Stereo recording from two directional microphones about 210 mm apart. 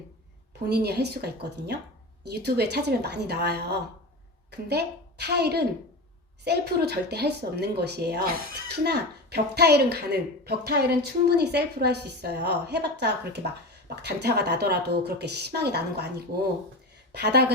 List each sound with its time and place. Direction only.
0.7 s speech: 50° right (ahead or behind)